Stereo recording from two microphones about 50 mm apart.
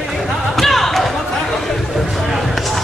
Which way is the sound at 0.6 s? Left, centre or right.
Centre.